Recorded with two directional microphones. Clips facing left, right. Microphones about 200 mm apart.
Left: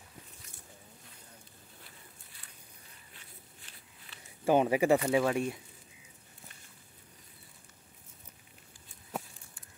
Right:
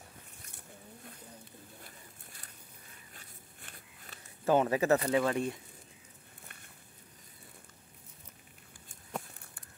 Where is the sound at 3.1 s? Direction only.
45° right (ahead or behind).